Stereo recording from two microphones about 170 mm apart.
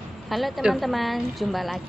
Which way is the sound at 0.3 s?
Centre (ahead or behind).